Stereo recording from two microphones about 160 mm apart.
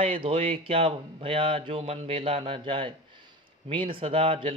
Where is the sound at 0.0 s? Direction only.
35° right (ahead or behind).